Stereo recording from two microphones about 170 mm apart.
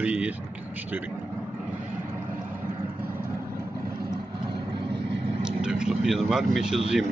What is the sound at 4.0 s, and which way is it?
Vehicle, 25° right (ahead or behind).